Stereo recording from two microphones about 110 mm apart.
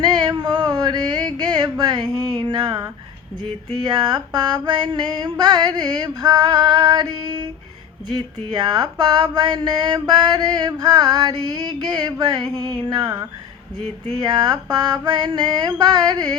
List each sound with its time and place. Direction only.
0.0 s a sound: 40° right (ahead or behind)
3.8 s mantra: 40° right (ahead or behind)
12.8 s music: 45° right (ahead or behind)
14.2 s mantra: 40° right (ahead or behind)